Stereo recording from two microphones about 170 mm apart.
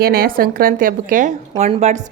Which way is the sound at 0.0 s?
60° right (ahead or behind).